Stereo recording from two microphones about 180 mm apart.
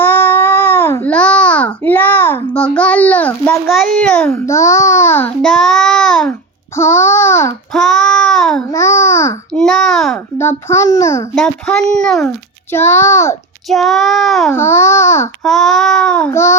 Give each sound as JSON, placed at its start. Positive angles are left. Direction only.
{"t": 0.0, "sound": "baby cry", "side_deg": 10}
{"t": 3.9, "sound": "a child's voice", "side_deg": 5}
{"t": 4.4, "sound": "a child's voice", "side_deg": 15}
{"t": 6.7, "sound": "a sound", "side_deg": 15}
{"t": 7.7, "sound": "child singing", "side_deg": 0}
{"t": 8.7, "sound": "babbling", "side_deg": 15}
{"t": 9.6, "sound": "a child's voice", "side_deg": 5}
{"t": 10.3, "sound": "a child's voice", "side_deg": 15}
{"t": 11.3, "sound": "child singing", "side_deg": 5}
{"t": 12.7, "sound": "a child's voice", "side_deg": 15}
{"t": 13.7, "sound": "child singing", "side_deg": 0}
{"t": 14.5, "sound": "a child's voice", "side_deg": 15}
{"t": 15.4, "sound": "child singing", "side_deg": 0}